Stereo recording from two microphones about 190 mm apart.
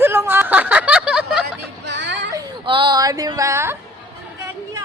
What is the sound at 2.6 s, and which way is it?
Speech, 25° right (ahead or behind).